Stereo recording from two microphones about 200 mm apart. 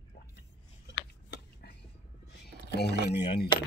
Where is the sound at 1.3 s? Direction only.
50° left (ahead or behind).